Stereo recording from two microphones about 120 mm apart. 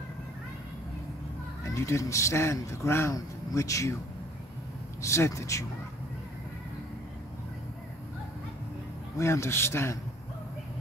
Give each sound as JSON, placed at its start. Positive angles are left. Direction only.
{"t": 1.6, "sound": "speech", "side_deg": 25}
{"t": 5.0, "sound": "speech", "side_deg": 25}
{"t": 9.2, "sound": "speech", "side_deg": 20}